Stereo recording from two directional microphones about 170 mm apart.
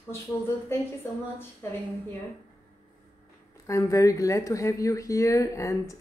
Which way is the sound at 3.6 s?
20° left (ahead or behind).